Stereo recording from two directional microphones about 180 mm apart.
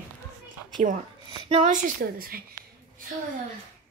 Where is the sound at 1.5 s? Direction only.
45° right (ahead or behind).